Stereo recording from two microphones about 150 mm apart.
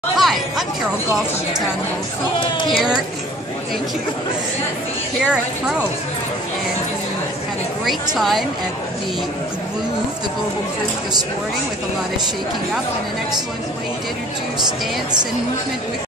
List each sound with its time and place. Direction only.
0.2 s a woman's voice: centre (ahead or behind)
2.4 s speech: 35° left (ahead or behind)
5.2 s speech: 5° right (ahead or behind)
8.2 s speech: centre (ahead or behind)